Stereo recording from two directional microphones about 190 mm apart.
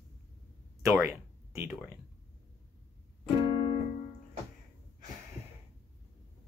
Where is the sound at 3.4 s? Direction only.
30° left (ahead or behind).